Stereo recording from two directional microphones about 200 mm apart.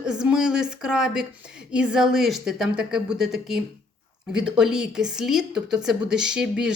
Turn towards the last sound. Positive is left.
turn(degrees=-5)  # may be behind; listen again after turning